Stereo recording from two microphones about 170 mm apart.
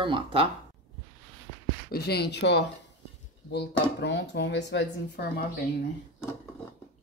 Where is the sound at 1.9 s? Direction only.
70° left (ahead or behind).